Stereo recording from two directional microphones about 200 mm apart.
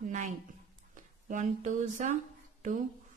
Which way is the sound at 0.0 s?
40° right (ahead or behind).